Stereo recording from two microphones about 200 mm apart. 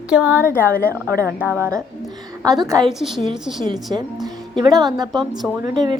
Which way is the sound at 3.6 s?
20° right (ahead or behind).